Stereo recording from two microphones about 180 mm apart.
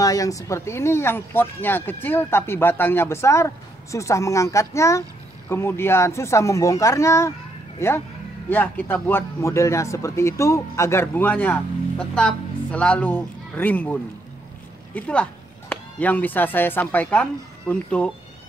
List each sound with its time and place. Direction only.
0.0 s speech: 20° left (ahead or behind)
15.0 s speech: 5° left (ahead or behind)